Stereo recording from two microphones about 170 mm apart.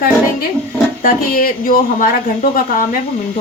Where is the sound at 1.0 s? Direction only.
55° left (ahead or behind).